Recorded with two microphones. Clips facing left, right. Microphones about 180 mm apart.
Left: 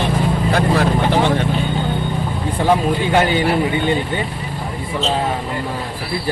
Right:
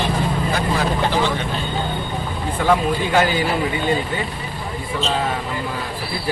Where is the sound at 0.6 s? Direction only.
60° left (ahead or behind).